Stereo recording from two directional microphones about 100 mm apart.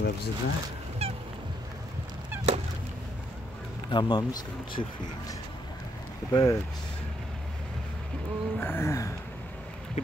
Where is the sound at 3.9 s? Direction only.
40° left (ahead or behind).